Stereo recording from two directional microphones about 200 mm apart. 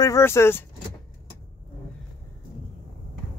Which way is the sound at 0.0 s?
15° left (ahead or behind).